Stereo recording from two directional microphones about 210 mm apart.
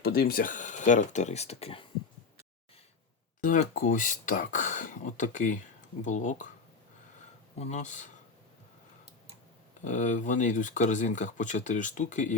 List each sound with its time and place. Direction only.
0.0 s speech: 45° left (ahead or behind); by 1.8 s 30° left (ahead or behind)
3.4 s speech: 40° left (ahead or behind)
7.6 s speech: 35° left (ahead or behind)
9.8 s speech: 35° left (ahead or behind)